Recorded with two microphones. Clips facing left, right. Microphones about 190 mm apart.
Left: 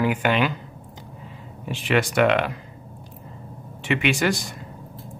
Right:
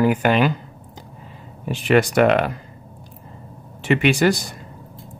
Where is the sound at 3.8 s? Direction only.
35° right (ahead or behind).